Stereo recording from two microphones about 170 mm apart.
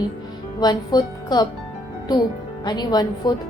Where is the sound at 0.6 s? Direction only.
25° left (ahead or behind).